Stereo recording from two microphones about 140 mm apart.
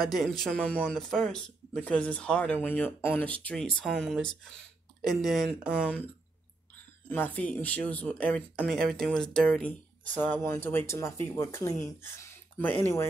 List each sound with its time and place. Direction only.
0.0 s speech: centre (ahead or behind)
7.1 s speech: 10° left (ahead or behind)